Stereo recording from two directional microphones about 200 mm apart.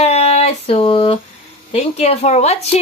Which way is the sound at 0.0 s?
30° left (ahead or behind).